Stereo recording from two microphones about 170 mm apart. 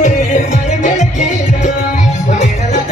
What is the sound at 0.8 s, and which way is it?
Music, 45° left (ahead or behind).